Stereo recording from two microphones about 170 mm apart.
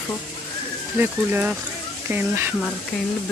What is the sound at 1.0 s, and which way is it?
Speech, 10° right (ahead or behind).